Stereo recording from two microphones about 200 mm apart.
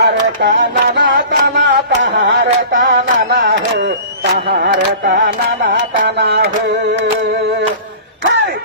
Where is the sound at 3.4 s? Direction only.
60° right (ahead or behind).